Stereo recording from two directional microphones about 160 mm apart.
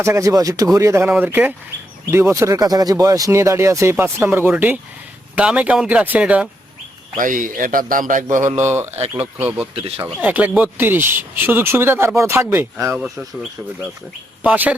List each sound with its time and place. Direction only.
0.0 s speech: 20° right (ahead or behind)
7.2 s a man's voice: 55° right (ahead or behind)
8.5 s speech: 15° right (ahead or behind)
8.9 s speech: 40° right (ahead or behind)
9.2 s speech: 10° right (ahead or behind)